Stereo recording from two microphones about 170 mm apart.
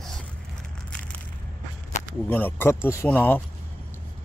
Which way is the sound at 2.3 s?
10° left (ahead or behind).